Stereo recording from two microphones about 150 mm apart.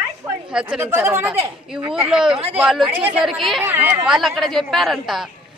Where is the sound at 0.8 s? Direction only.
15° right (ahead or behind).